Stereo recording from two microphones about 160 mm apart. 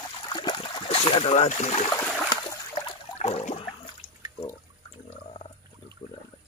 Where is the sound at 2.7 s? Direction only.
40° left (ahead or behind).